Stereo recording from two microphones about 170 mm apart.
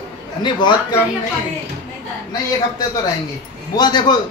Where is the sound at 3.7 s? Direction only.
25° left (ahead or behind).